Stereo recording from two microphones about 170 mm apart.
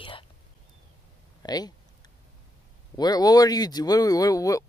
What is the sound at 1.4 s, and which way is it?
Speech, 25° left (ahead or behind).